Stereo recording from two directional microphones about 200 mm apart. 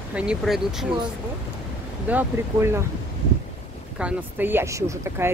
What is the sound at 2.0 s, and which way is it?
Speech, 10° right (ahead or behind).